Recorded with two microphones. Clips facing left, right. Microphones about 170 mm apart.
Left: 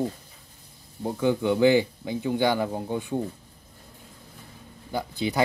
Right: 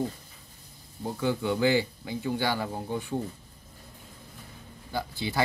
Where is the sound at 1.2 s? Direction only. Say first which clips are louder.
Left 5 dB; 20° left (ahead or behind).